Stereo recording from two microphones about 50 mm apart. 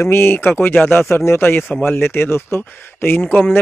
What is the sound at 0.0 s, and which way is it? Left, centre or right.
Speech, left.